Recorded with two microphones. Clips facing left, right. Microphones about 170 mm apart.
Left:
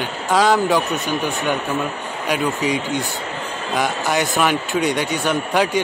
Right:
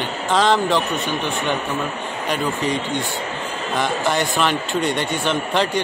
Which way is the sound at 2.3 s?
10° left (ahead or behind).